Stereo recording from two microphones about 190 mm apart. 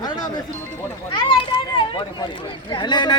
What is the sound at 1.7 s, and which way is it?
Speech, 25° left (ahead or behind).